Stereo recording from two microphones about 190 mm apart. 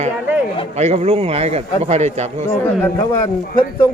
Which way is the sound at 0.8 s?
35° right (ahead or behind).